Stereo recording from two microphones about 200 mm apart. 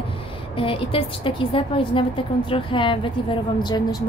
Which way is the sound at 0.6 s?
25° left (ahead or behind).